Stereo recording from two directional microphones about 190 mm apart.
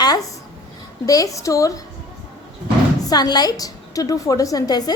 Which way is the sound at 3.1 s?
20° left (ahead or behind).